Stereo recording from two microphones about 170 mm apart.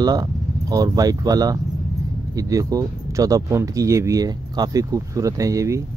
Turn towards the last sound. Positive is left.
turn(degrees=-20)  # may be behind; listen again after turning